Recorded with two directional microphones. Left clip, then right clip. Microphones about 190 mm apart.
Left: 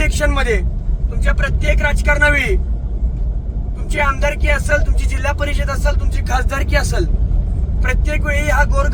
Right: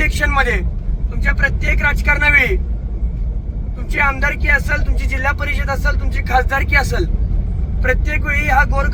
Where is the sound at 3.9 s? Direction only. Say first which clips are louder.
Right 1 dB; 20° left (ahead or behind).